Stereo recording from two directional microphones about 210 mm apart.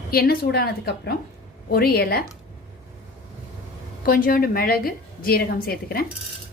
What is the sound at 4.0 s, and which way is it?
A woman's voice, 45° left (ahead or behind).